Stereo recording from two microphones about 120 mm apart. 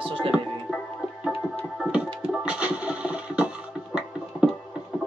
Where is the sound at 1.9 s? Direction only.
10° right (ahead or behind).